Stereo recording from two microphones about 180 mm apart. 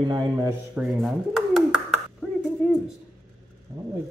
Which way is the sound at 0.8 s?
Centre (ahead or behind).